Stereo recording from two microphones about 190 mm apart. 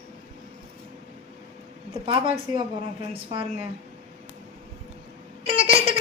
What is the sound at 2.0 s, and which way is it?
A woman's voice, 30° right (ahead or behind).